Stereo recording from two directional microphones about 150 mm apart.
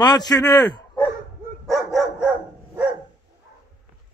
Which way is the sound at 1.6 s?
Centre (ahead or behind).